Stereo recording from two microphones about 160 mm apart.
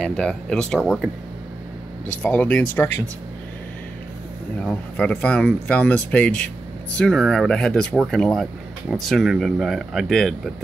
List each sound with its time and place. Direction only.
0.0 s speech: 5° left (ahead or behind)
2.2 s speech: 10° left (ahead or behind)
4.6 s speech: 5° left (ahead or behind)